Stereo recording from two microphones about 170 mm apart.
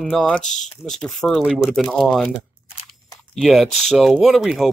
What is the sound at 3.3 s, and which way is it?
Speech, centre (ahead or behind).